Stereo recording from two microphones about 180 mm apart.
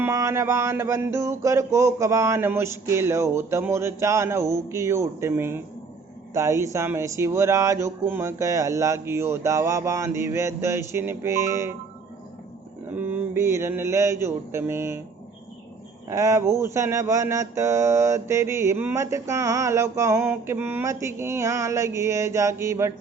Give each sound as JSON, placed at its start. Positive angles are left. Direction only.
{"t": 0.0, "sound": "speech", "side_deg": -15}
{"t": 12.9, "sound": "speech", "side_deg": -10}
{"t": 16.0, "sound": "speech", "side_deg": -15}